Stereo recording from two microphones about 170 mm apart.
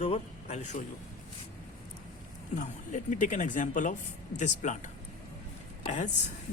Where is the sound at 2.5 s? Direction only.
45° left (ahead or behind).